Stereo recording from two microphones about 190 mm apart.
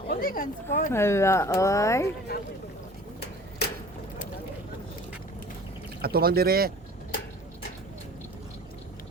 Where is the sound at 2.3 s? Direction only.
55° left (ahead or behind).